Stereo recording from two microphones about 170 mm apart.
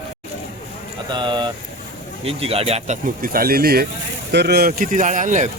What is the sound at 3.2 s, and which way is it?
Speech, 60° right (ahead or behind).